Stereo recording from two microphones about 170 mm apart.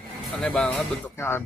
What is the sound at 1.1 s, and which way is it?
Speech, 15° left (ahead or behind).